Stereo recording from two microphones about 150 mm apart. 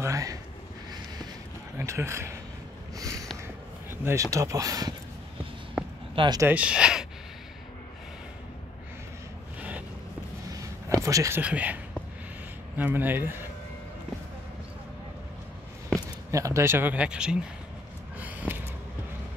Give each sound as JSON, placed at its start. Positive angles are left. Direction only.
{"t": 0.0, "sound": "speech", "side_deg": -20}
{"t": 1.8, "sound": "a man's voice", "side_deg": -20}
{"t": 3.0, "sound": "a sound", "side_deg": -20}
{"t": 4.0, "sound": "speech", "side_deg": -20}
{"t": 6.1, "sound": "speech", "side_deg": -30}
{"t": 6.4, "sound": "speech", "side_deg": -10}
{"t": 9.6, "sound": "a sound", "side_deg": -10}
{"t": 10.5, "sound": "a sound", "side_deg": -20}
{"t": 12.7, "sound": "speech", "side_deg": -10}
{"t": 16.3, "sound": "speech", "side_deg": -20}
{"t": 18.2, "sound": "snort", "side_deg": -10}